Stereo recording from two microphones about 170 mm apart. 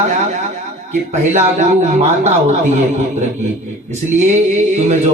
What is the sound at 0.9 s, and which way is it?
A man's voice, 45° right (ahead or behind).